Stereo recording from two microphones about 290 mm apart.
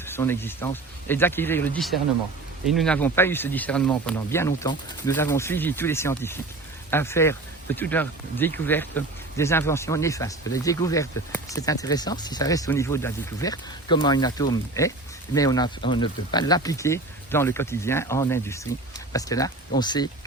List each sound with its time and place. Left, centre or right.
0.0 s speech: centre